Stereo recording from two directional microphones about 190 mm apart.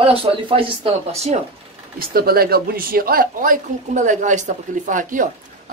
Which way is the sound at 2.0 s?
50° right (ahead or behind).